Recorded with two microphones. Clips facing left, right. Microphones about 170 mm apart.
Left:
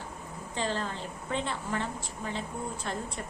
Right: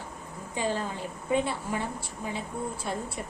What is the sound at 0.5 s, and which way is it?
A woman's voice, 10° right (ahead or behind).